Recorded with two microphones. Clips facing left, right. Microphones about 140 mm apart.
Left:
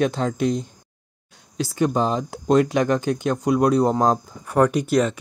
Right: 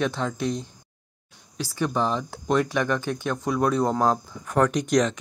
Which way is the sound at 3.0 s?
15° left (ahead or behind).